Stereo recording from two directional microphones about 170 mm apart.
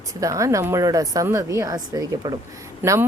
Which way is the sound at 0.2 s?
20° right (ahead or behind).